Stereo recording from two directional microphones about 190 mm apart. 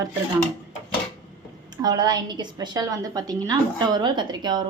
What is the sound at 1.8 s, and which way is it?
Speech, 20° right (ahead or behind).